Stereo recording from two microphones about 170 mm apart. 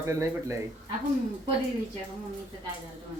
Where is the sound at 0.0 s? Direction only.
15° right (ahead or behind).